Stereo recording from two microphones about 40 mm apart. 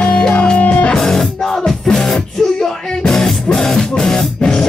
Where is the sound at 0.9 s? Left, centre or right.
Centre.